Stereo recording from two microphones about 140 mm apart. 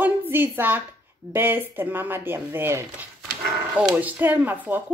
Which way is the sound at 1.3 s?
15° right (ahead or behind).